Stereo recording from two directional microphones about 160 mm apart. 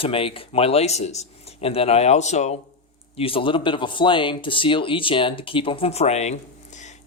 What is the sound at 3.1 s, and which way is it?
Speech, 35° left (ahead or behind).